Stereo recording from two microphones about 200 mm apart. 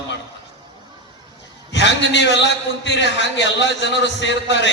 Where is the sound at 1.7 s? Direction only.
60° left (ahead or behind).